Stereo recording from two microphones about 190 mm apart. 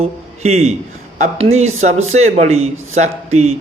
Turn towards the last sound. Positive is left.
turn(degrees=-35)  # may be behind; listen again after turning